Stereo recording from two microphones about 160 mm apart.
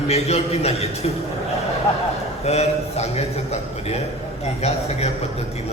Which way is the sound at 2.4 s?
40° left (ahead or behind).